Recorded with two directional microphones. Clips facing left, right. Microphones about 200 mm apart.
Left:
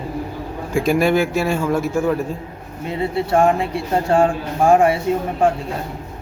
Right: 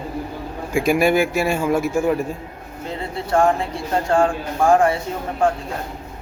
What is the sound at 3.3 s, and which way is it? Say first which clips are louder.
Speech: even; 20° left (ahead or behind).